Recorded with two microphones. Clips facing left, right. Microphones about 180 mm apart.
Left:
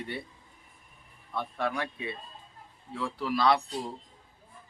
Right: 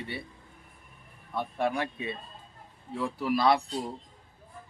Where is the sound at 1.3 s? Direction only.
20° right (ahead or behind).